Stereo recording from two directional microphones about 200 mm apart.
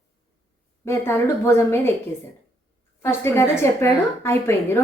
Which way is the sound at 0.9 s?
15° left (ahead or behind).